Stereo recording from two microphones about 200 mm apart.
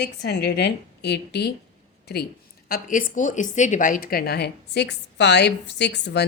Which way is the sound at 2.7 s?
40° left (ahead or behind).